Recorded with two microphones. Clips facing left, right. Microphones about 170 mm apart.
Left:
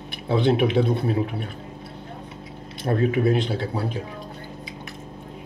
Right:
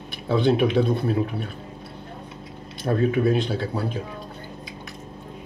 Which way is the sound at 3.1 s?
25° left (ahead or behind).